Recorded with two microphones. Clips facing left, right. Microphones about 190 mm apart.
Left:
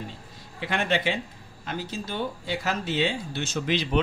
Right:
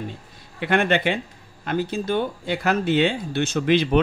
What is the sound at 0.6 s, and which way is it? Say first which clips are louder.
Speech: right 6 dB; 60° right (ahead or behind).